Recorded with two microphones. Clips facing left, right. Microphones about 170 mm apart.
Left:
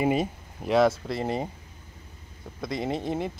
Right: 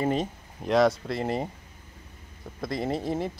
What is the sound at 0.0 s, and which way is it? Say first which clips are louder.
Speech: left 2 dB; 10° left (ahead or behind).